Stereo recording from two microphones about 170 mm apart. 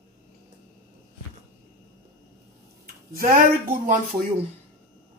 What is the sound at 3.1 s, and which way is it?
Speech, 55° right (ahead or behind).